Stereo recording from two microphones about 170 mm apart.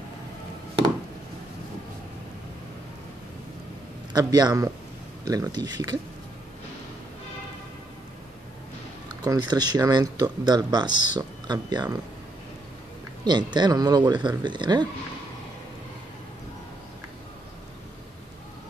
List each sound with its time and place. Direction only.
4.1 s speech: 25° right (ahead or behind)
9.2 s speech: 25° right (ahead or behind)
13.2 s speech: 25° right (ahead or behind)